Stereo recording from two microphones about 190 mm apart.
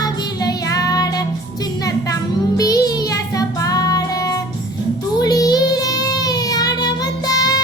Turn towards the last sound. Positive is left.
turn(degrees=20)  # may be behind; listen again after turning